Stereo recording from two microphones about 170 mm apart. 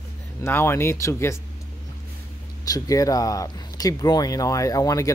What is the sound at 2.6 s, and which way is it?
Speech, 20° left (ahead or behind).